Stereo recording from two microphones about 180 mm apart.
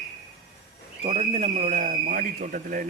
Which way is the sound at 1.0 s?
35° right (ahead or behind).